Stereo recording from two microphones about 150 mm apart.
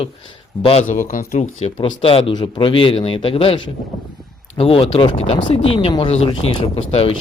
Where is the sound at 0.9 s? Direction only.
65° left (ahead or behind).